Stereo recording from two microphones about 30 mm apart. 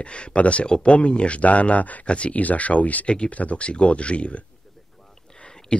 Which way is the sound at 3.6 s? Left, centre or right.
Left.